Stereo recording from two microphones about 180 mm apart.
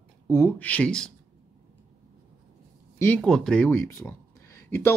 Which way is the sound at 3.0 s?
5° left (ahead or behind).